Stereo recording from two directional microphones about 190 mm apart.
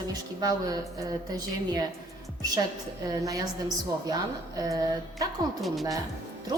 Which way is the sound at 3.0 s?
20° right (ahead or behind).